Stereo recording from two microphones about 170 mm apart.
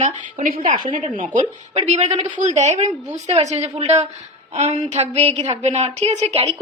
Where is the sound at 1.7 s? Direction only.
40° right (ahead or behind).